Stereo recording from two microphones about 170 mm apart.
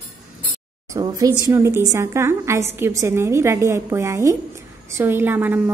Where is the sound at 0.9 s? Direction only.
20° right (ahead or behind).